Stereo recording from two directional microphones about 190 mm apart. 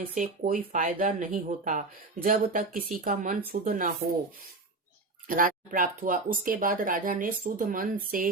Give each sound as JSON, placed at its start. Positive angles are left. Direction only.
{"t": 0.1, "sound": "speech", "side_deg": -45}
{"t": 5.3, "sound": "speech", "side_deg": -45}